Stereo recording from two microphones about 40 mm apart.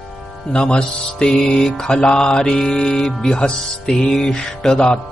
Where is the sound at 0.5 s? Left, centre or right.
Left.